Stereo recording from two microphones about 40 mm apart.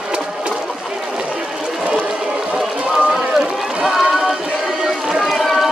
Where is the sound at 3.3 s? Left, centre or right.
Centre.